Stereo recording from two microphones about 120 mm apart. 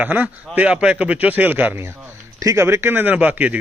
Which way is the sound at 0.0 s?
15° right (ahead or behind).